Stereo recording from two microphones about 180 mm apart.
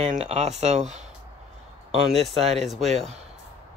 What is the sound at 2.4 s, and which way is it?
Speech, 40° right (ahead or behind).